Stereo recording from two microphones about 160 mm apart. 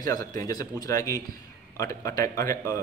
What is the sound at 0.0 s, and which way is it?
A man's voice, 25° left (ahead or behind).